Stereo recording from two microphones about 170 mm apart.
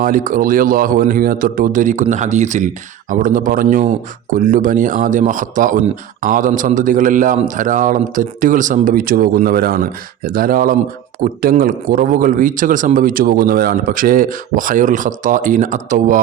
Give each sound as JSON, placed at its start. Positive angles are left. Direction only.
{"t": 0.0, "sound": "speech", "side_deg": -55}